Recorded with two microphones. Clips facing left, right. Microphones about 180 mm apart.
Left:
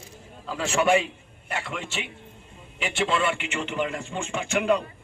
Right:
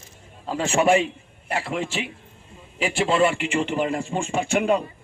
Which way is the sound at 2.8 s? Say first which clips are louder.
Right 5 dB; 35° right (ahead or behind).